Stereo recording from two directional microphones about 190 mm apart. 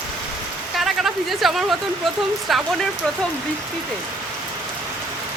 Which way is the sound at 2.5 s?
Centre (ahead or behind).